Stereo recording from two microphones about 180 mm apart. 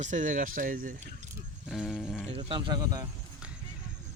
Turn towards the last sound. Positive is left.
turn(degrees=-20)  # may be behind; listen again after turning